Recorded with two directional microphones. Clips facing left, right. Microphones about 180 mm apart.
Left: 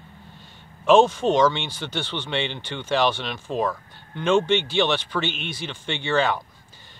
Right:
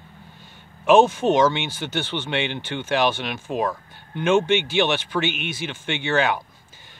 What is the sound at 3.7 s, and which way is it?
Speech, 15° right (ahead or behind).